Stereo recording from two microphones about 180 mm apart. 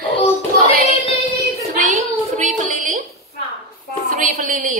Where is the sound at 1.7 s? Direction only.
45° right (ahead or behind).